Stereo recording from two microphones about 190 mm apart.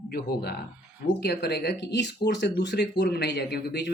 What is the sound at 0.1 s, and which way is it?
Speech, 55° left (ahead or behind).